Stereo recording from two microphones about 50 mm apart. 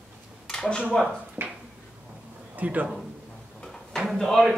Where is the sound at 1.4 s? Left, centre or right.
Right.